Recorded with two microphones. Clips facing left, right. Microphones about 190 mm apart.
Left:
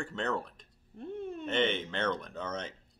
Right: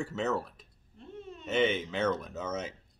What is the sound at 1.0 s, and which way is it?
Speech, 55° left (ahead or behind).